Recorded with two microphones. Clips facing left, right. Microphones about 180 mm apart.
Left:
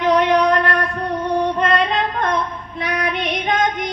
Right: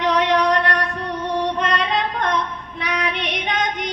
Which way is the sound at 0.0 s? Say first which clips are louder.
Left 3 dB; 50° left (ahead or behind).